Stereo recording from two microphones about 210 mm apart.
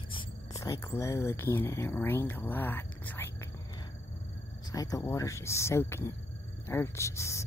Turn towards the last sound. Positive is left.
turn(degrees=15)  # may be behind; listen again after turning